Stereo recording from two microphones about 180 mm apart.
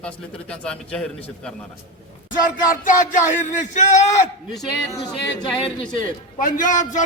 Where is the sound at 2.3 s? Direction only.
45° left (ahead or behind).